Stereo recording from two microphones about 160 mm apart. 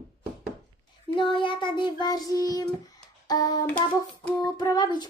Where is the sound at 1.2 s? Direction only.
30° left (ahead or behind).